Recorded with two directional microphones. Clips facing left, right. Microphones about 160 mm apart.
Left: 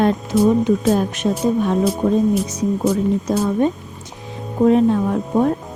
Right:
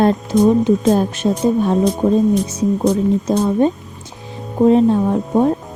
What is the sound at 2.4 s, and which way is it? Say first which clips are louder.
Speech: right 3 dB; 30° right (ahead or behind).